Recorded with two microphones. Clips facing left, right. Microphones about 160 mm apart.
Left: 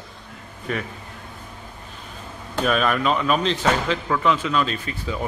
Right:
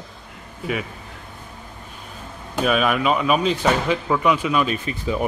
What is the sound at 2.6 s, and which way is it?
Speech, 5° right (ahead or behind).